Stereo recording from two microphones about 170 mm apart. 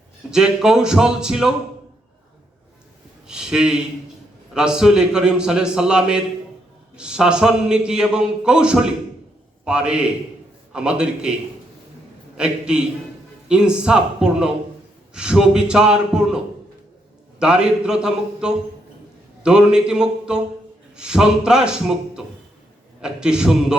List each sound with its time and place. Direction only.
0.3 s a man's voice: 5° right (ahead or behind)
3.2 s a man's voice: 5° right (ahead or behind)
12.4 s a man's voice: 5° right (ahead or behind)
17.4 s a man's voice: 5° right (ahead or behind)